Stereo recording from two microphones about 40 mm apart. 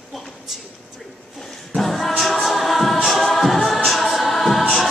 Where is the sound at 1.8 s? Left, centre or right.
Centre.